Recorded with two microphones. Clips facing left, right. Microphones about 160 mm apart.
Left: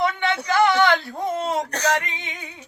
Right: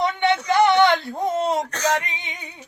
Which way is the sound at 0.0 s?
25° right (ahead or behind).